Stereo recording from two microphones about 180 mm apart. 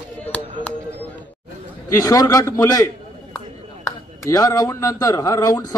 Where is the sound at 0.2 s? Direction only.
10° left (ahead or behind).